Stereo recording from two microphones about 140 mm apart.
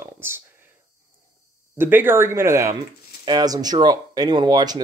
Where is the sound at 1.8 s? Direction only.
15° right (ahead or behind).